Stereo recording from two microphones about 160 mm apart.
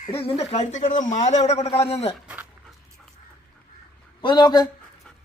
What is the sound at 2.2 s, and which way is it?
Dog, 10° right (ahead or behind).